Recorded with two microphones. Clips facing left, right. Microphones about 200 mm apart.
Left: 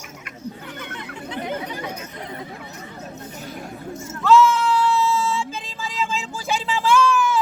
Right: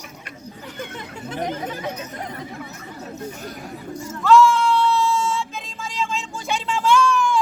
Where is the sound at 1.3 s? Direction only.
45° right (ahead or behind).